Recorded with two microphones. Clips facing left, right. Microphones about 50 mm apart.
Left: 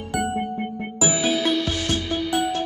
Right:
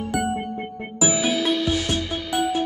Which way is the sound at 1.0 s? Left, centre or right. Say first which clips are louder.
Even; centre.